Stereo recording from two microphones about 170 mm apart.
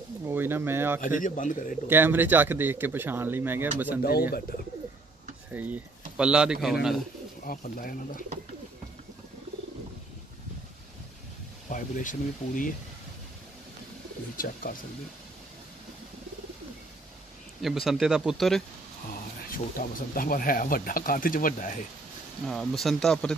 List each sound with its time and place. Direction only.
0.3 s speech: 15° right (ahead or behind)
1.0 s speech: 50° left (ahead or behind)
1.9 s speech: 10° right (ahead or behind)
4.0 s speech: 65° left (ahead or behind)
5.5 s speech: 10° right (ahead or behind)
7.4 s speech: 55° left (ahead or behind)
11.7 s speech: 50° left (ahead or behind)
14.3 s speech: 55° left (ahead or behind)
17.6 s speech: centre (ahead or behind)
19.1 s speech: 55° left (ahead or behind)
22.5 s speech: centre (ahead or behind)